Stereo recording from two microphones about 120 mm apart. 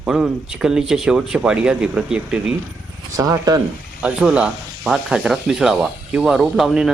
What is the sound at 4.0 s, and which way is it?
Speech, 10° right (ahead or behind).